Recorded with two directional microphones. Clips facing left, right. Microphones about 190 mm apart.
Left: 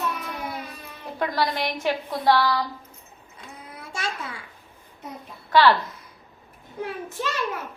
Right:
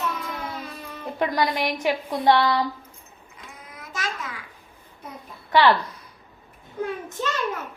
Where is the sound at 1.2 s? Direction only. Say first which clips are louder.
Right 2 dB; 15° right (ahead or behind).